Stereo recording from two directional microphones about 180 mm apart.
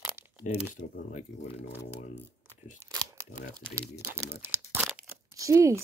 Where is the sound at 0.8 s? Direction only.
45° left (ahead or behind).